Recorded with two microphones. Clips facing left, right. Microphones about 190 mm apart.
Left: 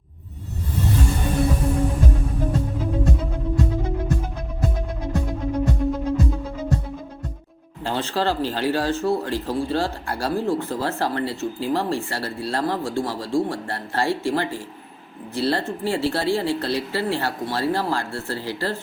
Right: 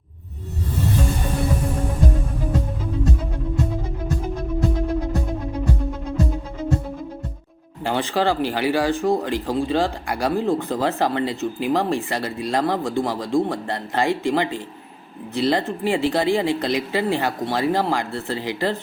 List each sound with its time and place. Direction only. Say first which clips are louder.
7.9 s speech: right 3 dB; 15° right (ahead or behind)